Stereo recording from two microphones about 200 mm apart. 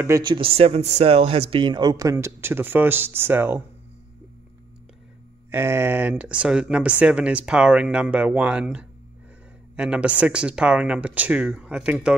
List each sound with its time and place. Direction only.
0.0 s speech: 20° right (ahead or behind)
5.5 s speech: 10° right (ahead or behind)